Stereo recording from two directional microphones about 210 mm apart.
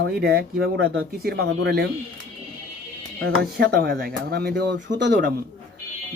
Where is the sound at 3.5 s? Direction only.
45° right (ahead or behind).